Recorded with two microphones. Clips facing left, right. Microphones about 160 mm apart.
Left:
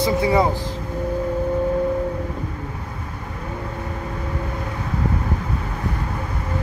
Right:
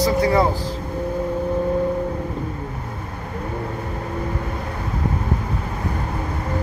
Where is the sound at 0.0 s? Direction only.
20° left (ahead or behind).